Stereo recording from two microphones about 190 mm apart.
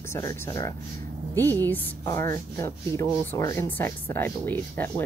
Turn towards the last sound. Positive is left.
turn(degrees=10)  # may be behind; listen again after turning